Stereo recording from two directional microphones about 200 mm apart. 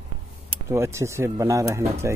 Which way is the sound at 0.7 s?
15° right (ahead or behind).